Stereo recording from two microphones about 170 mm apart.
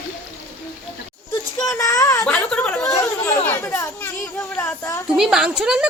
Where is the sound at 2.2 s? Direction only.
5° left (ahead or behind).